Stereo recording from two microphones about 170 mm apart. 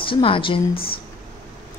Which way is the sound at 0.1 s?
30° left (ahead or behind).